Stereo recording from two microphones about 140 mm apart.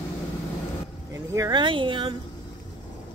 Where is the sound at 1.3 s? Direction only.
30° right (ahead or behind).